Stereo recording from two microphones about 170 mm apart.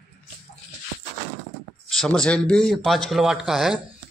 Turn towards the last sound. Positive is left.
turn(degrees=0)  # may be behind; listen again after turning